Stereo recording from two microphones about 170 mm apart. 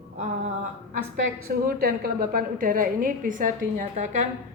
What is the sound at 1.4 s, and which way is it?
A woman's voice, 60° right (ahead or behind).